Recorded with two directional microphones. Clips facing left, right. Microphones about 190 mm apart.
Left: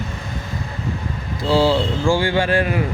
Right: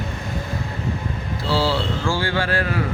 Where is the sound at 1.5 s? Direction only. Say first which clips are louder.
Left 5 dB; 15° left (ahead or behind).